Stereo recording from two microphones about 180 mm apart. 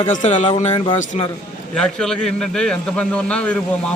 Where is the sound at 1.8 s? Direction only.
5° left (ahead or behind).